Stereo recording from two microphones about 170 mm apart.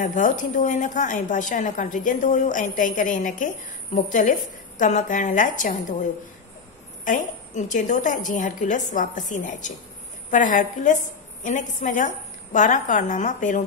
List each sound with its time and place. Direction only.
0.0 s a woman's voice: 50° left (ahead or behind)
7.1 s a woman's voice: 45° left (ahead or behind)